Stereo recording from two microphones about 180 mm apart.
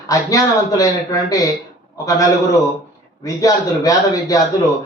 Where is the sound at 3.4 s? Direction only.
20° left (ahead or behind).